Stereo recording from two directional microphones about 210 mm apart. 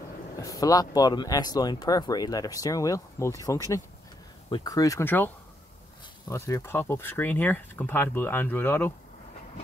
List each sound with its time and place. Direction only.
0.4 s speech: 15° left (ahead or behind)